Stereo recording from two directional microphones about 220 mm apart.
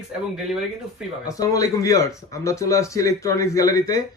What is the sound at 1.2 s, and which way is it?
Speech, 15° left (ahead or behind).